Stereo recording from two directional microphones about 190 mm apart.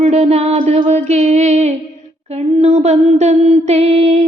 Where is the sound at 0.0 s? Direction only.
35° right (ahead or behind).